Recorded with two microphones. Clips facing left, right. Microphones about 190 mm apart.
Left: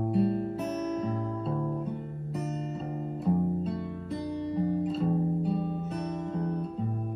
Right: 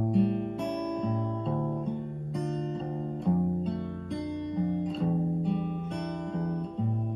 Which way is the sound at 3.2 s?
5° left (ahead or behind).